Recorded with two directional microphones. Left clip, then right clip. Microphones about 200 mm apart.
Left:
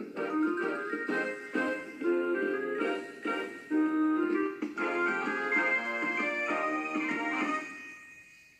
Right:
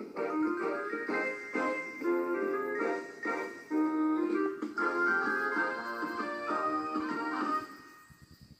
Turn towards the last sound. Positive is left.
turn(degrees=30)  # may be behind; listen again after turning